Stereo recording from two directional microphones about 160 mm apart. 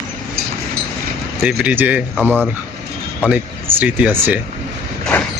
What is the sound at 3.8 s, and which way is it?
Speech, 10° right (ahead or behind).